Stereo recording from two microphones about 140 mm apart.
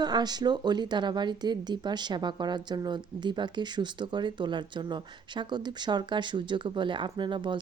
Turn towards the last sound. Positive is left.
turn(degrees=-35)  # may be behind; listen again after turning